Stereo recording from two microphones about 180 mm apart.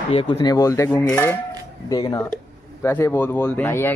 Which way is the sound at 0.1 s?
30° left (ahead or behind).